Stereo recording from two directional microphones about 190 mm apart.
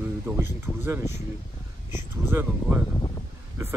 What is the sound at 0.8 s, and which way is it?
Speech, 15° right (ahead or behind).